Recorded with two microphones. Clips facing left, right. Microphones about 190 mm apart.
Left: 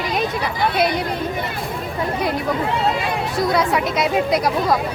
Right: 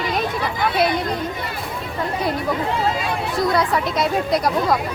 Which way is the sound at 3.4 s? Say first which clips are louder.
Left 1 dB; centre (ahead or behind).